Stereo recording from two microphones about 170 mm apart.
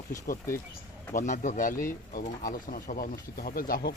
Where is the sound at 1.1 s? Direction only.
45° left (ahead or behind).